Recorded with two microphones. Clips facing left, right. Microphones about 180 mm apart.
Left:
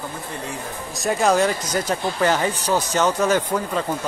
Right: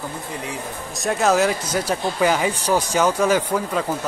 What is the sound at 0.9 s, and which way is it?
Speech, centre (ahead or behind).